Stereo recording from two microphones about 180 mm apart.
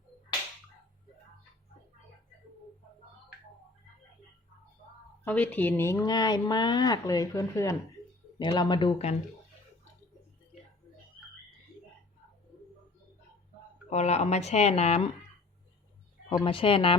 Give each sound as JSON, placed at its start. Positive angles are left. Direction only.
{"t": 5.2, "sound": "speech", "side_deg": 10}
{"t": 13.9, "sound": "speech", "side_deg": 40}
{"t": 16.3, "sound": "speech", "side_deg": 25}